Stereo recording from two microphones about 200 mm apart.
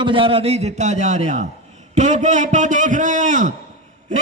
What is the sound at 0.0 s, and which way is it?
A man's voice, 25° right (ahead or behind).